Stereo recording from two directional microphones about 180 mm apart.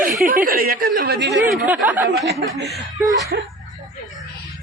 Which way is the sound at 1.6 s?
10° right (ahead or behind).